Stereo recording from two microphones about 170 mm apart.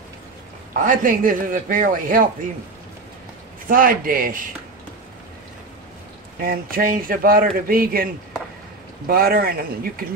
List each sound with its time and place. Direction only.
0.8 s a man's voice: 50° right (ahead or behind)
3.6 s speech: 55° right (ahead or behind)
6.4 s speech: 55° right (ahead or behind)